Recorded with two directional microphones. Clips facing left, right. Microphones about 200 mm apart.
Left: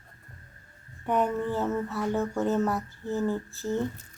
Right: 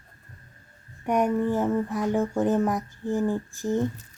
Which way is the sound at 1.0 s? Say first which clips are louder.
Right 3 dB; 15° right (ahead or behind).